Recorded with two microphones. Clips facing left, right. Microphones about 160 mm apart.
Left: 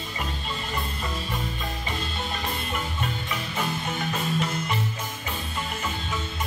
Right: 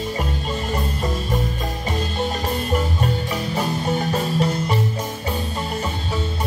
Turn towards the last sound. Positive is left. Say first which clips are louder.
# right 6 dB
turn(degrees=-35)  # may be behind; listen again after turning